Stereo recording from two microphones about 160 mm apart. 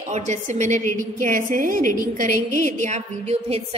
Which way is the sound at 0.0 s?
45° right (ahead or behind).